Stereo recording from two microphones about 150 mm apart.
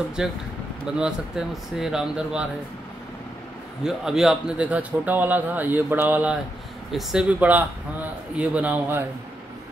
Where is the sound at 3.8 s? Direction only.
5° right (ahead or behind).